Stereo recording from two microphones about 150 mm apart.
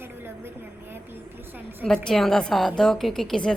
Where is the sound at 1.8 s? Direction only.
5° left (ahead or behind).